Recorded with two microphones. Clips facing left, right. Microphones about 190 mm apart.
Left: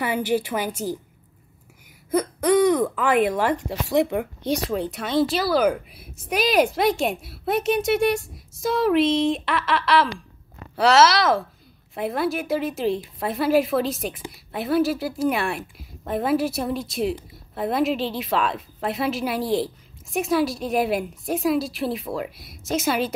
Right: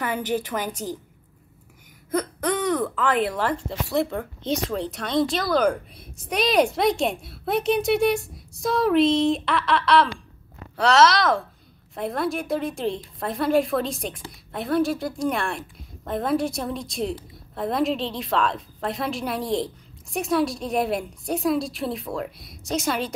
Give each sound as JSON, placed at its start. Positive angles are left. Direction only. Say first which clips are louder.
{"t": 0.0, "sound": "speech", "louder": "left 3 dB", "side_deg": 10}
{"t": 2.0, "sound": "speech", "louder": "left 4 dB", "side_deg": 10}
{"t": 4.6, "sound": "speech", "louder": "left 2 dB", "side_deg": 5}